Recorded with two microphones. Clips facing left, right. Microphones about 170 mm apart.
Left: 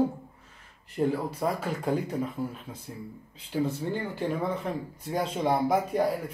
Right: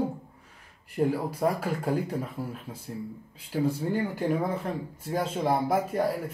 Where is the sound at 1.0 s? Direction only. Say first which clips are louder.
Right 1 dB; 10° right (ahead or behind).